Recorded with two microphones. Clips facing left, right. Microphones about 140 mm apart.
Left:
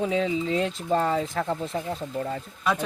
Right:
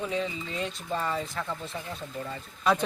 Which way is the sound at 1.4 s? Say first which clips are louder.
Left 7 dB; 65° left (ahead or behind).